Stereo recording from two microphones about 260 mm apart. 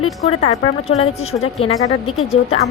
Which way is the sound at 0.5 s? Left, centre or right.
Left.